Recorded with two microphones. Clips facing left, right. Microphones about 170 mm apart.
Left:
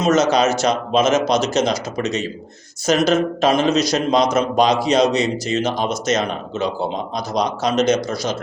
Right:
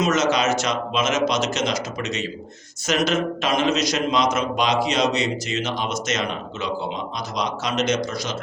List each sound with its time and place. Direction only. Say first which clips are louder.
0.0 s a man's voice: left 4 dB; 35° left (ahead or behind)